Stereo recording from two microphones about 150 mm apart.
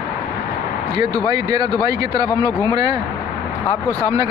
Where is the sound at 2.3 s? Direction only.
25° left (ahead or behind).